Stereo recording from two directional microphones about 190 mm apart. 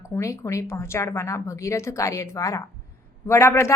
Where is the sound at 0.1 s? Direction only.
15° left (ahead or behind).